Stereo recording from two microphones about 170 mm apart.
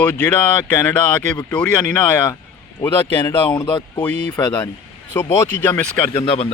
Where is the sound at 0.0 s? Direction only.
10° left (ahead or behind).